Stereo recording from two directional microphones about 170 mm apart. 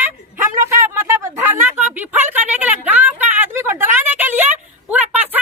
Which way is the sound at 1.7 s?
10° right (ahead or behind).